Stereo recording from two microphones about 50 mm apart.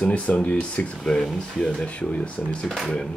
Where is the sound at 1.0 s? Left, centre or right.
Centre.